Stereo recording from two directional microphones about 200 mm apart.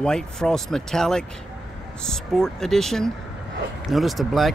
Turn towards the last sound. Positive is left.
turn(degrees=0)  # may be behind; listen again after turning